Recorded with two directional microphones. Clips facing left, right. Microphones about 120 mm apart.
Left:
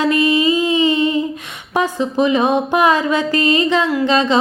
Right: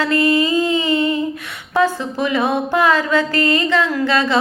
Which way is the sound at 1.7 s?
20° left (ahead or behind).